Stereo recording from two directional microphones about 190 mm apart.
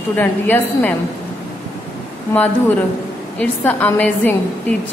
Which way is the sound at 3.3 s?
10° left (ahead or behind).